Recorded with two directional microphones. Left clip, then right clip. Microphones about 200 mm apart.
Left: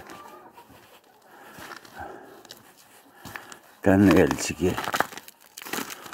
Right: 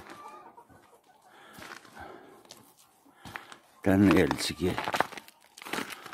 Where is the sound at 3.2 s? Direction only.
55° left (ahead or behind).